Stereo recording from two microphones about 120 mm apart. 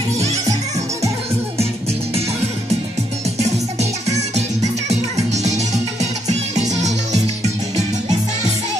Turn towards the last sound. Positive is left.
turn(degrees=-70)  # may be behind; listen again after turning